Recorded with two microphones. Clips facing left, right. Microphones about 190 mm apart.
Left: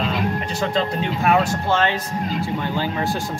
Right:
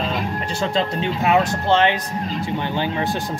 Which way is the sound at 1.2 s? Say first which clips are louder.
Right 1 dB; 15° right (ahead or behind).